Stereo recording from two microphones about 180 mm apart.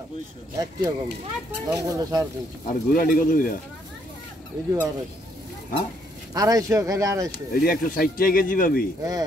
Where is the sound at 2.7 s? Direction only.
50° left (ahead or behind).